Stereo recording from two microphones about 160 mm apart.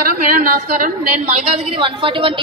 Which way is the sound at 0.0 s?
60° right (ahead or behind).